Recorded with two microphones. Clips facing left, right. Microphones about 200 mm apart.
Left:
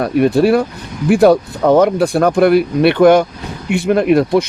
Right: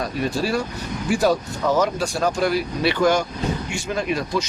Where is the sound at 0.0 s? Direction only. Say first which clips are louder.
Left 12 dB; 60° left (ahead or behind).